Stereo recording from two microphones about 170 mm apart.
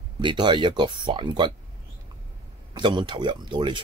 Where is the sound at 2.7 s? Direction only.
25° right (ahead or behind).